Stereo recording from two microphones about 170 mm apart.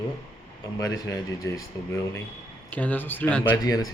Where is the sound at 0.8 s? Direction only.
20° left (ahead or behind).